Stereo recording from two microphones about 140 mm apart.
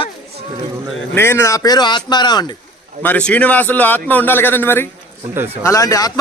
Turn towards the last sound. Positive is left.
turn(degrees=25)  # may be behind; listen again after turning